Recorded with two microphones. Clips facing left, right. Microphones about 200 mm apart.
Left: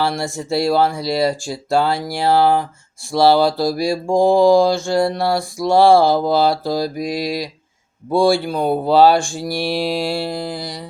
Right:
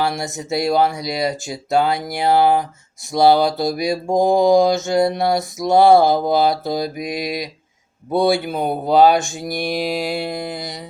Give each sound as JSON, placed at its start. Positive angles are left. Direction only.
{"t": 0.2, "sound": "speech", "side_deg": -20}
{"t": 3.1, "sound": "mantra", "side_deg": -20}
{"t": 8.9, "sound": "speech", "side_deg": -15}